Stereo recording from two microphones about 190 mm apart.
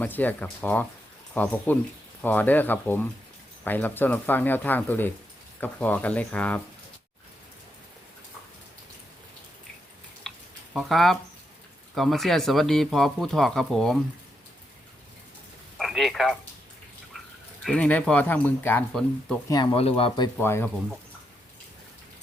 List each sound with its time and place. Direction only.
0.0 s speech: 10° left (ahead or behind)
10.3 s a sound: centre (ahead or behind)
10.8 s speech: centre (ahead or behind)
15.8 s telephone: centre (ahead or behind)
17.7 s speech: 5° left (ahead or behind)
19.5 s speech: 25° left (ahead or behind)
20.3 s speech: 10° left (ahead or behind)